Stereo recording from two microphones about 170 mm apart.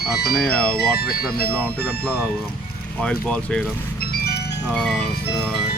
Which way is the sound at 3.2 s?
5° left (ahead or behind).